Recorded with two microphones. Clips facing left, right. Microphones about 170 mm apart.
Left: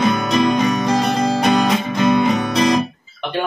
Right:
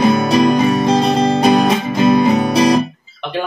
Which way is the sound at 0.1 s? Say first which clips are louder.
Right 4 dB; 30° right (ahead or behind).